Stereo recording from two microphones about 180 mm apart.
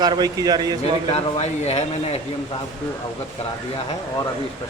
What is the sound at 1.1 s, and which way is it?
Speech, 35° left (ahead or behind).